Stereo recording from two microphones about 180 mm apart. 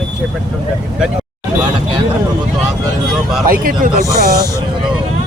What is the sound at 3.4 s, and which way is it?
Speech, 50° right (ahead or behind).